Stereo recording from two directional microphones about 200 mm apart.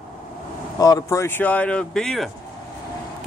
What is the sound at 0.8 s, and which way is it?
Speech, 15° left (ahead or behind).